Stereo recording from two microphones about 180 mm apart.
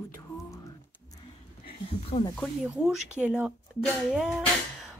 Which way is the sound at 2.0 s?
30° left (ahead or behind).